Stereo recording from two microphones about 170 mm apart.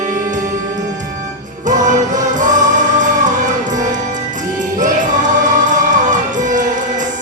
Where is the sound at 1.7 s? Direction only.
50° right (ahead or behind).